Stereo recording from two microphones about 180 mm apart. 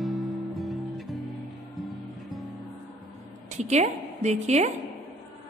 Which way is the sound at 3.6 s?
40° right (ahead or behind).